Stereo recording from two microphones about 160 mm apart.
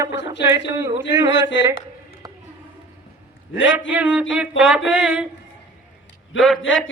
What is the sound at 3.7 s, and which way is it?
Speech, 10° right (ahead or behind).